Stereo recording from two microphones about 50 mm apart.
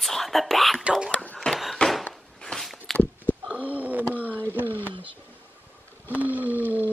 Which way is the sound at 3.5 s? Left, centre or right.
Right.